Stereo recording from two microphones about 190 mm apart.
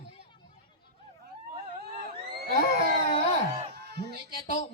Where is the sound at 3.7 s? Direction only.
60° right (ahead or behind).